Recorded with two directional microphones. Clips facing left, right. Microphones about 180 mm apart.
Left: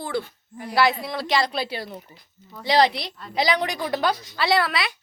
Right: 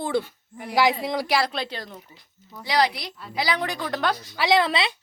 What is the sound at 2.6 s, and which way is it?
A woman's voice, 25° left (ahead or behind).